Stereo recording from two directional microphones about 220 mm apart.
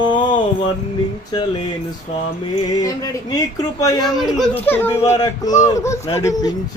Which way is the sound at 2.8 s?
15° left (ahead or behind).